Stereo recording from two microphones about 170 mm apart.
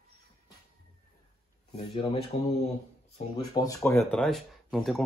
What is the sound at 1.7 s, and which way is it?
Speech, 35° left (ahead or behind).